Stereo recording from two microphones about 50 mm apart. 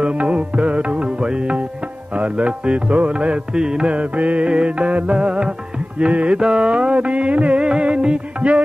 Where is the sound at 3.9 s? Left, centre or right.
Right.